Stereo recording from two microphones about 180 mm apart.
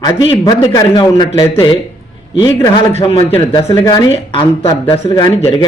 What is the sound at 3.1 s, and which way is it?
A man's voice, 30° left (ahead or behind).